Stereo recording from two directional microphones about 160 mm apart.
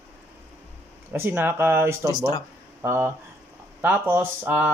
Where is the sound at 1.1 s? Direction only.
15° right (ahead or behind).